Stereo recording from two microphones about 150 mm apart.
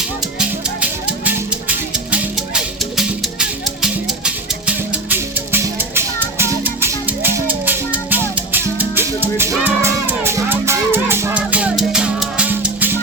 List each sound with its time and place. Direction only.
0.3 s music: 10° right (ahead or behind)